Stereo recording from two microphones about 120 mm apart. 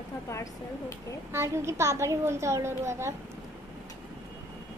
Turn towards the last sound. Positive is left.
turn(degrees=-20)  # may be behind; listen again after turning